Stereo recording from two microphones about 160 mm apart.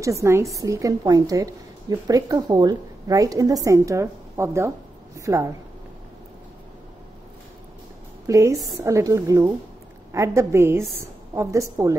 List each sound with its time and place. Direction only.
0.0 s a woman's voice: 20° right (ahead or behind)
8.3 s a woman's voice: 20° right (ahead or behind)